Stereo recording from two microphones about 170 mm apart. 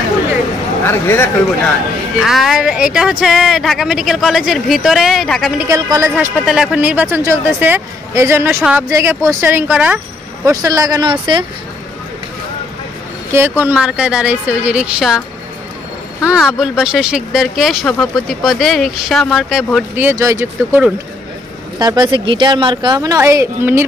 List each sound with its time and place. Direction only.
0.8 s speech: 15° left (ahead or behind)
2.2 s speech: centre (ahead or behind)
5.6 s speech: 15° right (ahead or behind)
6.4 s speech: 5° right (ahead or behind); by 11.4 s 25° right (ahead or behind)
13.3 s speech: 10° right (ahead or behind)
16.4 s speech: centre (ahead or behind)
20.0 s speech: 15° right (ahead or behind)